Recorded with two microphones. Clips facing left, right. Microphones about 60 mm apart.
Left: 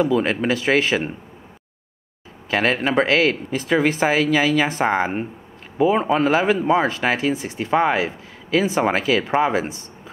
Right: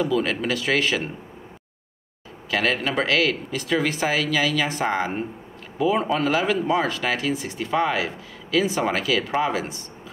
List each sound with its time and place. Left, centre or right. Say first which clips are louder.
0.0 s speech: left 4 dB; left
2.5 s speech: left 4 dB; left